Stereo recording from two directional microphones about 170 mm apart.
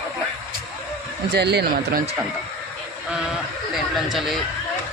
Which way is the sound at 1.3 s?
75° right (ahead or behind).